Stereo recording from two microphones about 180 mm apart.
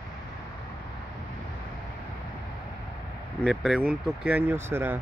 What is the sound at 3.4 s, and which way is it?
Speech, 5° right (ahead or behind).